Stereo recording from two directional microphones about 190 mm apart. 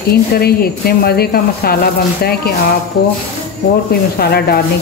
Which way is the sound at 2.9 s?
55° left (ahead or behind).